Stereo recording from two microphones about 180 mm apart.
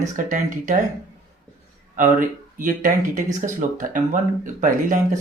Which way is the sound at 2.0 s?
50° right (ahead or behind).